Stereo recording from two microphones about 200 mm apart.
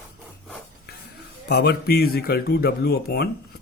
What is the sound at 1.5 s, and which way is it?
Speech, 55° left (ahead or behind).